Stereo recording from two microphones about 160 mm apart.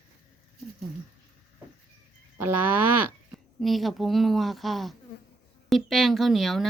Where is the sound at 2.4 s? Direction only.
10° right (ahead or behind).